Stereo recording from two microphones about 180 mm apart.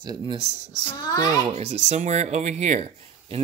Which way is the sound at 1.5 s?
35° right (ahead or behind).